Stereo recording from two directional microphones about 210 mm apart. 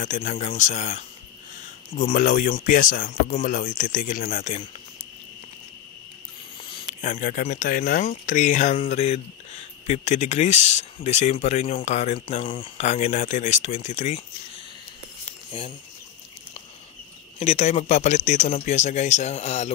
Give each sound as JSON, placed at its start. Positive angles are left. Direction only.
{"t": 0.0, "sound": "speech", "side_deg": 35}
{"t": 7.0, "sound": "speech", "side_deg": 40}
{"t": 15.2, "sound": "a sound", "side_deg": 30}
{"t": 17.4, "sound": "speech", "side_deg": 30}